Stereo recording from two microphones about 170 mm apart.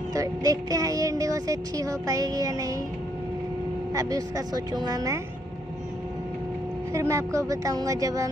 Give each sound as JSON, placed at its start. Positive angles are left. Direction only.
{"t": 0.1, "sound": "speech", "side_deg": -20}
{"t": 3.9, "sound": "speech", "side_deg": -20}
{"t": 6.9, "sound": "speech", "side_deg": -15}